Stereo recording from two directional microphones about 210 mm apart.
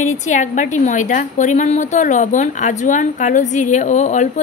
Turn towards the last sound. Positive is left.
turn(degrees=35)  # may be behind; listen again after turning